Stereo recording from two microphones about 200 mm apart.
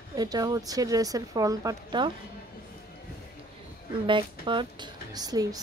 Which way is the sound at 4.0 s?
25° right (ahead or behind).